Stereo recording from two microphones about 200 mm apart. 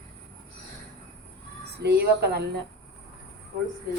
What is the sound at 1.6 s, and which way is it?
A woman's voice, 55° right (ahead or behind).